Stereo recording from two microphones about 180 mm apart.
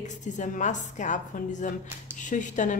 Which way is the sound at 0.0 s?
40° left (ahead or behind).